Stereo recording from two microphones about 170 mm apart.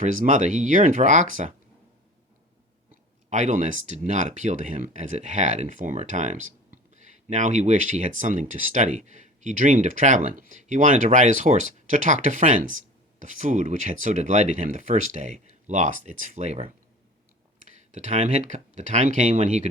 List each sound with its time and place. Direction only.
0.0 s speech: 50° right (ahead or behind)
3.2 s speech: 45° right (ahead or behind)
17.7 s speech: 45° right (ahead or behind)